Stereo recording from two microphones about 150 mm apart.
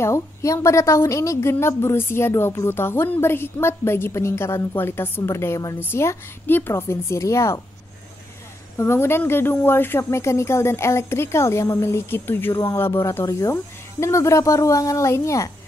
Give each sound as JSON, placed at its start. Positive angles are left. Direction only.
{"t": 0.0, "sound": "a woman's voice", "side_deg": 20}
{"t": 8.7, "sound": "a woman's voice", "side_deg": 15}